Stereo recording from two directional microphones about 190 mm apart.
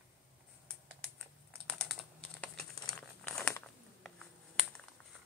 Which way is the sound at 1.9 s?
5° left (ahead or behind).